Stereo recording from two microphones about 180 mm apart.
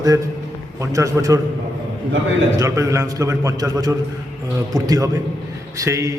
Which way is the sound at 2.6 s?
20° right (ahead or behind).